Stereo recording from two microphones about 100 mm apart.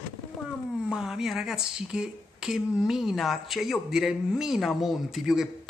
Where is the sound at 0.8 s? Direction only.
5° right (ahead or behind).